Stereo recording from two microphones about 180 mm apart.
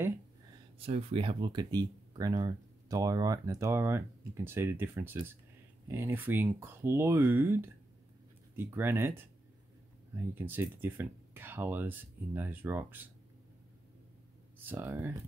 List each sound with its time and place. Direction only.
0.8 s speech: 30° right (ahead or behind); by 9.2 s 15° right (ahead or behind)
10.3 s speech: 10° right (ahead or behind)
14.7 s speech: 10° right (ahead or behind)